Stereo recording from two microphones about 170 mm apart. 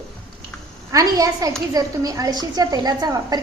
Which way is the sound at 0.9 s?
20° right (ahead or behind).